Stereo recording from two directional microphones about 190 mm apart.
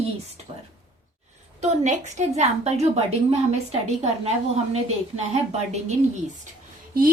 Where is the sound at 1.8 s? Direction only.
40° right (ahead or behind).